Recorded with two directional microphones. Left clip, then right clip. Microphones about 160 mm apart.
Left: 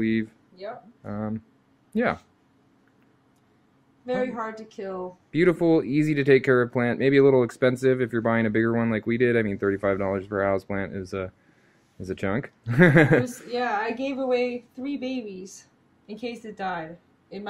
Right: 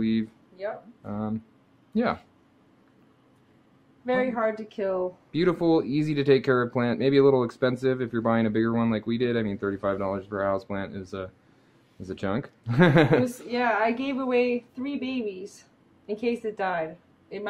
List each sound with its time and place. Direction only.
0.0 s speech: 5° left (ahead or behind)
4.0 s a woman's voice: 15° right (ahead or behind)
5.3 s speech: 5° left (ahead or behind)
13.5 s a woman's voice: 15° right (ahead or behind)
16.1 s a woman's voice: 25° right (ahead or behind)